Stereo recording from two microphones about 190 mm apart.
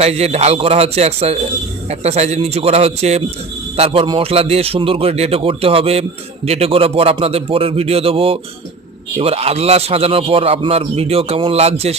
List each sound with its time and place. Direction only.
0.0 s a man's voice: 35° right (ahead or behind)